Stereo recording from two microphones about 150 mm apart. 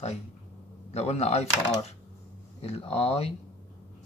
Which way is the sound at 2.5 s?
40° left (ahead or behind).